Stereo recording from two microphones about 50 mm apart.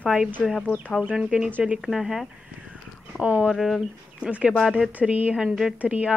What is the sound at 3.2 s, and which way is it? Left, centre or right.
Speech, right.